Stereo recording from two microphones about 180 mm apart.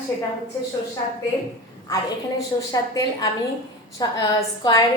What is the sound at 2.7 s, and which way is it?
A woman's voice, 20° left (ahead or behind).